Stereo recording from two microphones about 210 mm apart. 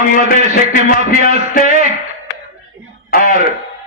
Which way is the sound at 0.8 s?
40° left (ahead or behind).